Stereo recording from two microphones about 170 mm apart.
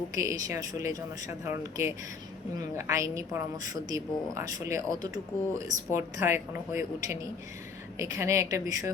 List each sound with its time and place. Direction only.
0.2 s a woman's voice: 20° right (ahead or behind)